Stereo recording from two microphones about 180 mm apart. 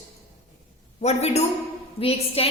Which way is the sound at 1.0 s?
35° left (ahead or behind).